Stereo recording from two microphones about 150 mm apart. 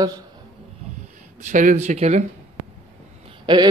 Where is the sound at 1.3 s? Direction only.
60° right (ahead or behind).